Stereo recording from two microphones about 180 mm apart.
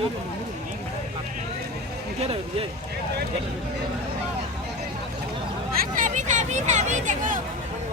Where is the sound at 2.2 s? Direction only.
30° right (ahead or behind).